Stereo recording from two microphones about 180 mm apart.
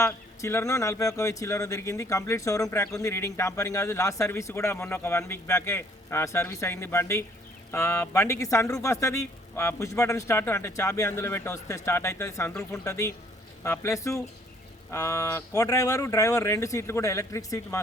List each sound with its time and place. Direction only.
0.0 s speech: 15° left (ahead or behind)